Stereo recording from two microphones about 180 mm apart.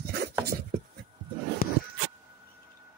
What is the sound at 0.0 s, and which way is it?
Writing, 60° right (ahead or behind).